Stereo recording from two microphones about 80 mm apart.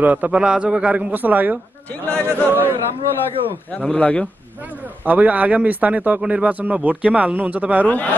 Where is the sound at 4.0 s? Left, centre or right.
Centre.